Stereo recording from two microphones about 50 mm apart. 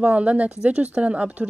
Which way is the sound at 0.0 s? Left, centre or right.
Right.